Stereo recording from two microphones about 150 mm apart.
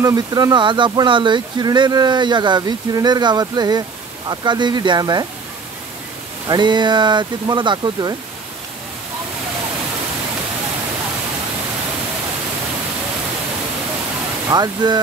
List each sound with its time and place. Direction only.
0.0 s speech: 25° right (ahead or behind)
6.4 s speech: 30° right (ahead or behind)
14.5 s speech: 25° right (ahead or behind)